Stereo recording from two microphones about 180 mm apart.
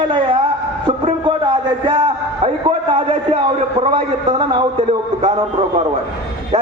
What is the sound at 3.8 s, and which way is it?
A man's voice, 30° right (ahead or behind).